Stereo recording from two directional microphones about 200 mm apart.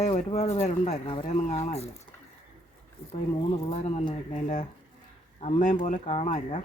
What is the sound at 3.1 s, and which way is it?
Speech, 30° left (ahead or behind).